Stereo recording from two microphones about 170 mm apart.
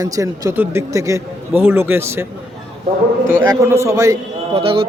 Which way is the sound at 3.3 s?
15° right (ahead or behind).